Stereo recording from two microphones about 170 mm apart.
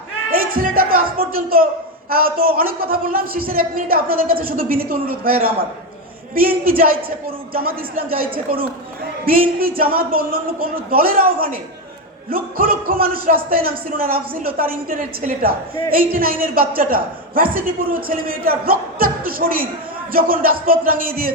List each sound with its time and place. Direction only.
0.5 s music: 60° right (ahead or behind)
2.0 s a woman's voice: 60° right (ahead or behind)
7.9 s a woman's voice: 60° right (ahead or behind)